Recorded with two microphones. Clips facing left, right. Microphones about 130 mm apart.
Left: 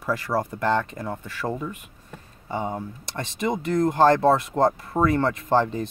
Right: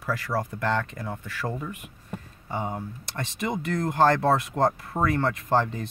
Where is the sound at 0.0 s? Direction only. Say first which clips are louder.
Left 3 dB; 35° left (ahead or behind).